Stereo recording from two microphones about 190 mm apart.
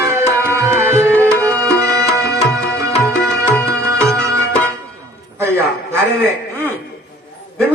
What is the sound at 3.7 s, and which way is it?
Music, 15° right (ahead or behind).